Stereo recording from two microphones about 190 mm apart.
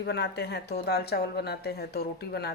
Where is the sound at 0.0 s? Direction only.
60° left (ahead or behind).